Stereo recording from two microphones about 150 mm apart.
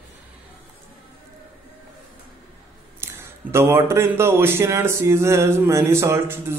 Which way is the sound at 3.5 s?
15° right (ahead or behind).